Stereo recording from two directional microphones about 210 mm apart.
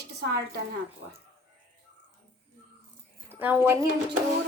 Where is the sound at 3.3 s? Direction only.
10° right (ahead or behind).